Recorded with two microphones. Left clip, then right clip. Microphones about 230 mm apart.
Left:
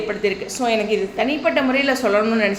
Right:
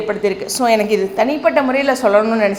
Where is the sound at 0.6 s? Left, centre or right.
Right.